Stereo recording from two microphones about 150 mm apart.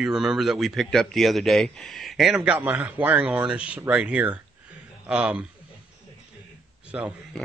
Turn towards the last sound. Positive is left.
turn(degrees=-5)  # may be behind; listen again after turning